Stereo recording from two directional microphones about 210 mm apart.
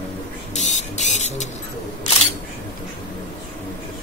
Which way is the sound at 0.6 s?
35° left (ahead or behind).